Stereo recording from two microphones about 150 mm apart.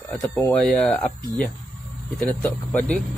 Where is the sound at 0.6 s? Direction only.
5° left (ahead or behind).